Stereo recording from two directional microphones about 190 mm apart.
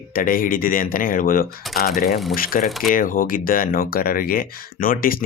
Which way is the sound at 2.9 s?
45° left (ahead or behind).